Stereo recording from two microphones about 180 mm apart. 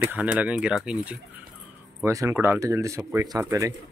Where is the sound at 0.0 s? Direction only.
10° right (ahead or behind).